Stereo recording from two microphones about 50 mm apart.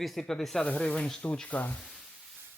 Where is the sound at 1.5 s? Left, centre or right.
Left.